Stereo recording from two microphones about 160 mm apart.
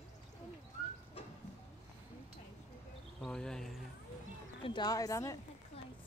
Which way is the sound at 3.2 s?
5° left (ahead or behind).